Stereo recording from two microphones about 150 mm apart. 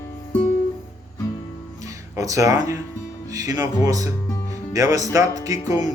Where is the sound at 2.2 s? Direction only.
20° right (ahead or behind).